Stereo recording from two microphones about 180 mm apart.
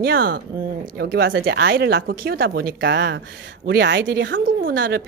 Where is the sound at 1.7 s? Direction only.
60° right (ahead or behind).